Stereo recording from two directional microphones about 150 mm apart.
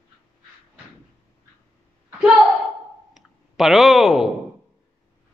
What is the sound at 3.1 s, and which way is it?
Clicking, centre (ahead or behind).